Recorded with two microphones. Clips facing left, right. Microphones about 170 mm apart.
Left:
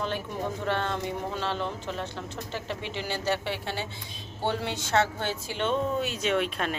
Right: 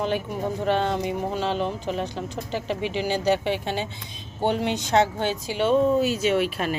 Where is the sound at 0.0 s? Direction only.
15° right (ahead or behind).